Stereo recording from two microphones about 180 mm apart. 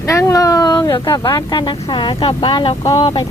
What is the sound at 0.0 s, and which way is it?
Speech, 15° left (ahead or behind).